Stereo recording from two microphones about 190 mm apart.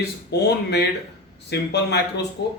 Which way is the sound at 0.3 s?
60° left (ahead or behind).